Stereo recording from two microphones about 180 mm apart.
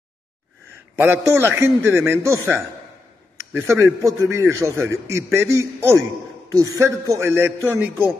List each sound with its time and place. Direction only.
0.9 s a man's voice: 10° right (ahead or behind)